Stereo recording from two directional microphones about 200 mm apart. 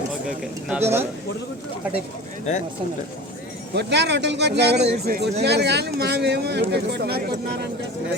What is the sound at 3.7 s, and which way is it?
Speech, 55° right (ahead or behind).